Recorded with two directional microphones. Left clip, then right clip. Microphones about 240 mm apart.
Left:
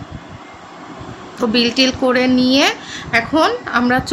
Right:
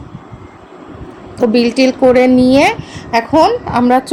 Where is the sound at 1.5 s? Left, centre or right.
Centre.